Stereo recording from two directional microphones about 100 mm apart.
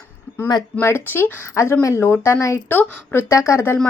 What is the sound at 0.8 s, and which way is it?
Speech, 25° left (ahead or behind).